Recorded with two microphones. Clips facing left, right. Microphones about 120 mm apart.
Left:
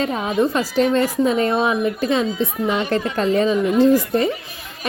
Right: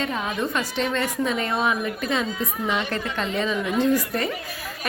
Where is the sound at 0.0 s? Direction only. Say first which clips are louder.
Left 7 dB; 30° left (ahead or behind).